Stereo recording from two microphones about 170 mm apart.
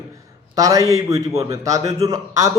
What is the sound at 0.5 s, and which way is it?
Speech, 20° right (ahead or behind).